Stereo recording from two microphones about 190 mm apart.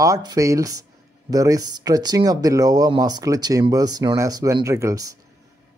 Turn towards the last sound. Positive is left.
turn(degrees=-15)  # may be behind; listen again after turning